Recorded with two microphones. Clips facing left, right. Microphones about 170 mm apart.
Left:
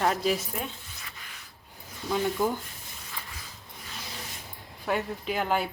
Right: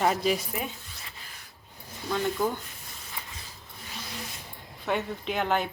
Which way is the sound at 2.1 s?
10° left (ahead or behind).